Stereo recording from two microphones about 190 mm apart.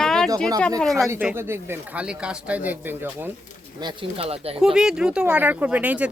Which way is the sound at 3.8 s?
30° right (ahead or behind).